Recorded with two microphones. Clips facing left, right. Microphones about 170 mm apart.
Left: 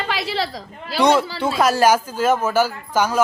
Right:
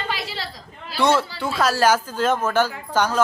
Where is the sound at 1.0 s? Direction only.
15° left (ahead or behind).